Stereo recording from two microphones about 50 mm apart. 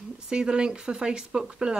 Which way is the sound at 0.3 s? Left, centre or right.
Centre.